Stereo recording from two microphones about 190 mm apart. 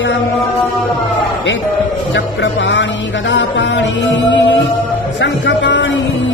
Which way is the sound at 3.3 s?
70° left (ahead or behind).